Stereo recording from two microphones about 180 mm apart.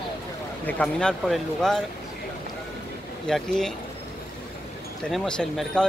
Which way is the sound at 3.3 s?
5° left (ahead or behind).